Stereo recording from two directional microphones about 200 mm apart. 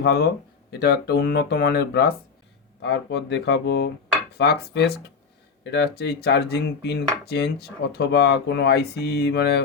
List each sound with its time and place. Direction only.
0.0 s speech: 55° left (ahead or behind)